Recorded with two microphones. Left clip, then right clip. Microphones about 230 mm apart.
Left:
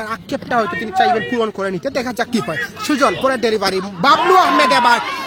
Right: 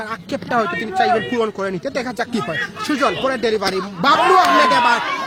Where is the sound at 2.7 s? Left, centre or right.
Left.